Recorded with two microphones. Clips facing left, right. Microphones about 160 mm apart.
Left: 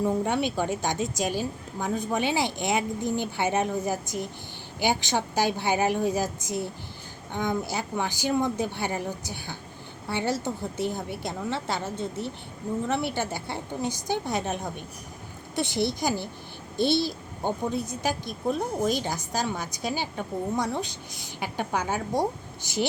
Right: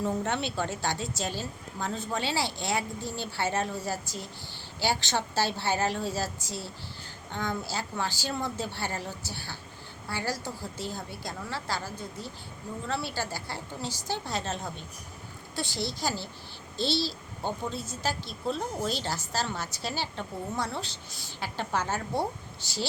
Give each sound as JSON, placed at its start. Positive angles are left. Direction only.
{"t": 0.0, "sound": "a woman's voice", "side_deg": 15}